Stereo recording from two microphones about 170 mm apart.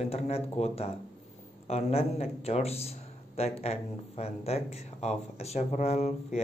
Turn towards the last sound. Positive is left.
turn(degrees=40)  # may be behind; listen again after turning